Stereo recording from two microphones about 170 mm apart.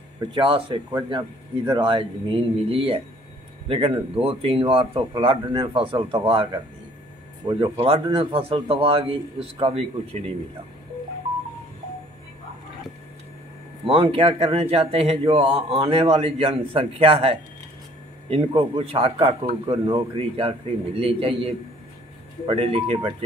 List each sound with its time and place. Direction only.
0.2 s a man's voice: 30° right (ahead or behind)
13.8 s a man's voice: 35° right (ahead or behind)
18.5 s a man's voice: 30° right (ahead or behind)
22.5 s a man's voice: 35° right (ahead or behind)